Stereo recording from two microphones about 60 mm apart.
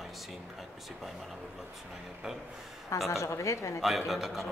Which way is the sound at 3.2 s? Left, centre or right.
Left.